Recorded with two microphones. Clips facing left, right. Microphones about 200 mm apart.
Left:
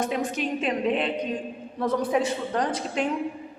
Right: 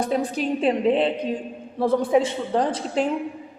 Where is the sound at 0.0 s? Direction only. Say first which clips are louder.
Right 3 dB; 35° right (ahead or behind).